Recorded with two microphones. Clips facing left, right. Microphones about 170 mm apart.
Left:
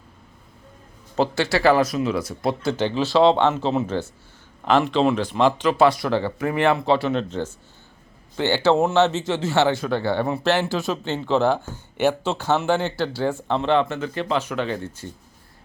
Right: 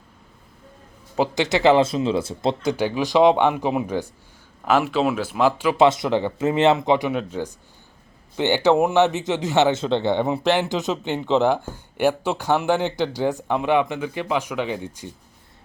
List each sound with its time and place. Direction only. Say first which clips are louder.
1.1 s speech: even; 15° right (ahead or behind)
2.7 s speech: left 1 dB; 10° right (ahead or behind)
5.7 s speech: right 1 dB; 20° right (ahead or behind)